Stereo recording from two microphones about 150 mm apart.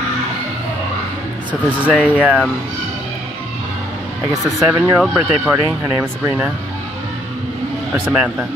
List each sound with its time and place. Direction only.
1.5 s speech: 10° right (ahead or behind)
4.5 s speech: centre (ahead or behind); by 6.5 s 15° right (ahead or behind)
8.0 s speech: 5° right (ahead or behind)